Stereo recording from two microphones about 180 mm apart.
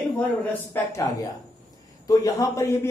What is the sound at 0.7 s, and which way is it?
A man's voice, 15° left (ahead or behind).